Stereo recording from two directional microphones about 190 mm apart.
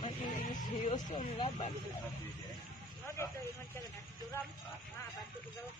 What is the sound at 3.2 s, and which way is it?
Speech, 15° left (ahead or behind).